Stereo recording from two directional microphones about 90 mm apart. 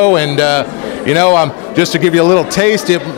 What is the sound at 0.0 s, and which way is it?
A man's voice, 20° left (ahead or behind).